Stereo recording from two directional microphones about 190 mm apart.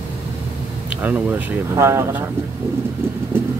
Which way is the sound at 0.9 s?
10° right (ahead or behind).